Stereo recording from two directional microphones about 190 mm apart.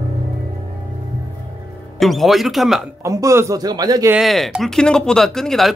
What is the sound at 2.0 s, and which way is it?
Speech, centre (ahead or behind).